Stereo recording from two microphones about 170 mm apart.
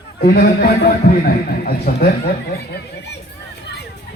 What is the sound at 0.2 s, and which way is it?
A man's voice, 60° left (ahead or behind).